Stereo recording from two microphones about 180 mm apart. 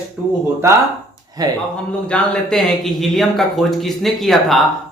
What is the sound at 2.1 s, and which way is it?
Speech, 5° left (ahead or behind).